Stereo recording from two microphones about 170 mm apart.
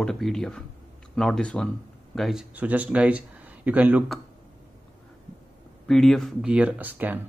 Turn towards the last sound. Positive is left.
turn(degrees=-10)  # may be behind; listen again after turning